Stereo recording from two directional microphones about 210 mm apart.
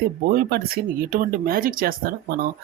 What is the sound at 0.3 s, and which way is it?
Speech, 45° right (ahead or behind).